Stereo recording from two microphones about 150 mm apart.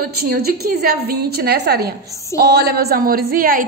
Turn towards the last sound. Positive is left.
turn(degrees=-70)  # may be behind; listen again after turning